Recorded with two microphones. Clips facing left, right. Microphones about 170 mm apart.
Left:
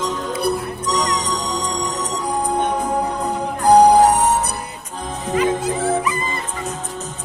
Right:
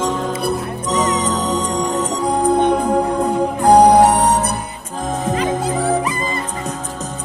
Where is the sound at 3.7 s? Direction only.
60° right (ahead or behind).